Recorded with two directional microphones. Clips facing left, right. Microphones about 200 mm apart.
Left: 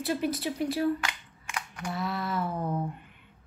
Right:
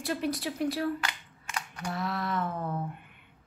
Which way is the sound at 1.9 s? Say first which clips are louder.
Even; centre (ahead or behind).